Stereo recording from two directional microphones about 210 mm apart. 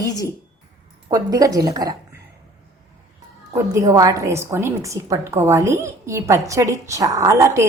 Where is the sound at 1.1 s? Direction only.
15° right (ahead or behind).